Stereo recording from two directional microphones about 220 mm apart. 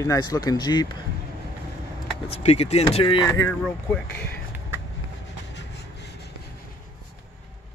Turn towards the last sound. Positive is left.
turn(degrees=50)  # may be behind; listen again after turning